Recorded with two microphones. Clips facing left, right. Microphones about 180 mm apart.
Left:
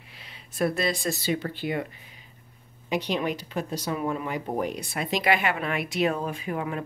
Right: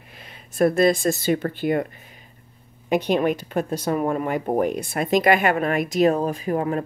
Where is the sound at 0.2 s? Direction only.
50° right (ahead or behind).